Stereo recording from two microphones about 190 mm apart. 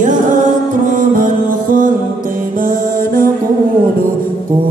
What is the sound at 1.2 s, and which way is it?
Music, 45° right (ahead or behind).